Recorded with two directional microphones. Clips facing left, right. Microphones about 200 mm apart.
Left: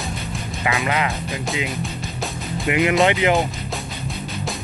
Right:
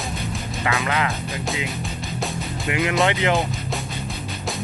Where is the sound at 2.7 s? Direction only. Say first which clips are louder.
Left 4 dB; 15° left (ahead or behind).